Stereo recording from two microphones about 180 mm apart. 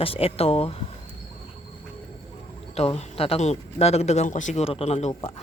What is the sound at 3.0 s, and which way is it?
Speech, 35° left (ahead or behind).